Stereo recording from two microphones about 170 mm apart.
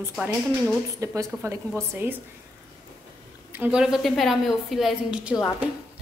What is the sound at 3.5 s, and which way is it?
A woman's voice, 10° right (ahead or behind).